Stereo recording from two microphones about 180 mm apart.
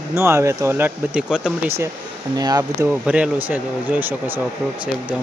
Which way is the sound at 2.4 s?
20° right (ahead or behind).